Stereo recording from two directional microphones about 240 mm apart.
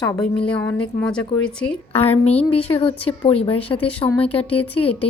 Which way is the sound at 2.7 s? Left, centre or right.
Centre.